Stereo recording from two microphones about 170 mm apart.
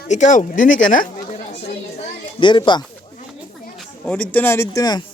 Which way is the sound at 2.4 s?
30° left (ahead or behind).